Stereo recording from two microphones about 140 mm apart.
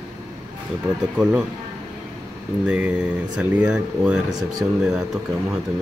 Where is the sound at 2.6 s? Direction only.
5° right (ahead or behind).